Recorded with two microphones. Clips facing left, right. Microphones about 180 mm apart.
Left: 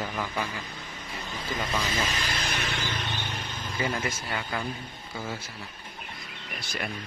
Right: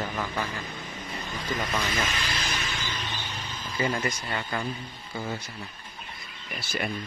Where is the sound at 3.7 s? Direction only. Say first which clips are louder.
Right 2 dB; centre (ahead or behind).